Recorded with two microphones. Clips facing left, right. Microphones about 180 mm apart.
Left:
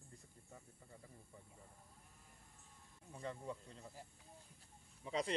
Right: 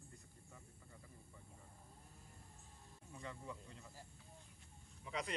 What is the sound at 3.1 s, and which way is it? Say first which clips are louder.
Snake: left 4 dB; 35° left (ahead or behind).